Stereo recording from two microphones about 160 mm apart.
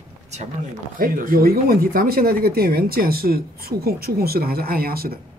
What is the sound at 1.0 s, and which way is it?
Speech, 60° right (ahead or behind).